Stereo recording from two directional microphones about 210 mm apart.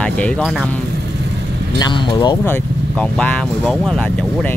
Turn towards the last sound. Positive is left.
turn(degrees=5)  # may be behind; listen again after turning